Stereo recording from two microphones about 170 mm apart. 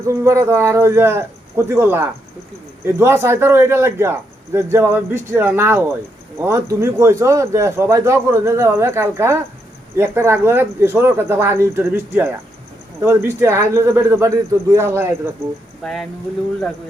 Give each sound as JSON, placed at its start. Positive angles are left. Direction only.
{"t": 0.0, "sound": "speech", "side_deg": -15}
{"t": 15.8, "sound": "speech", "side_deg": 5}